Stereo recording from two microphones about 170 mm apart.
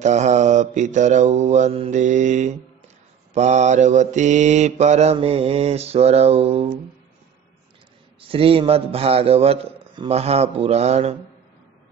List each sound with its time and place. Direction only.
0.0 s mantra: 45° right (ahead or behind)
8.2 s mantra: 35° right (ahead or behind)